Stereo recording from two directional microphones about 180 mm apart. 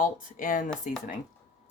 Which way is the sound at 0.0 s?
50° left (ahead or behind).